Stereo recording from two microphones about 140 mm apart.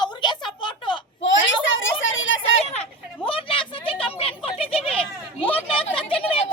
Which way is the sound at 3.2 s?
40° left (ahead or behind).